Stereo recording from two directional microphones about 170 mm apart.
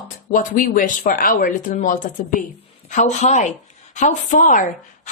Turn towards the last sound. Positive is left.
turn(degrees=50)  # may be behind; listen again after turning